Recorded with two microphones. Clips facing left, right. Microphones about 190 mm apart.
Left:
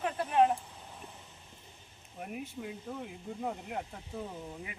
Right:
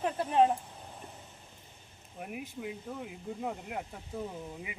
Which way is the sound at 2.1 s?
Centre (ahead or behind).